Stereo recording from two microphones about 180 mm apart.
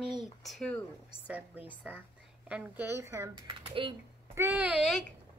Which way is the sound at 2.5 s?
10° right (ahead or behind).